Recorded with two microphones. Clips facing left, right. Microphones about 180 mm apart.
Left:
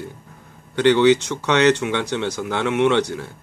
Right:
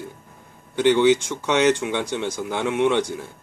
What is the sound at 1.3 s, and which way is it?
Speech, 70° left (ahead or behind).